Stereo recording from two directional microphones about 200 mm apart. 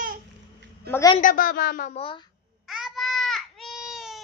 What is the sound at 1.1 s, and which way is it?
A woman's voice, 45° left (ahead or behind).